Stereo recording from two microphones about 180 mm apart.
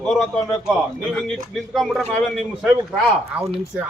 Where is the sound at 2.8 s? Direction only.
15° right (ahead or behind).